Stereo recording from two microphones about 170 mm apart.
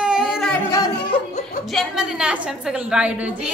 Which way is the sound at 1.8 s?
5° right (ahead or behind).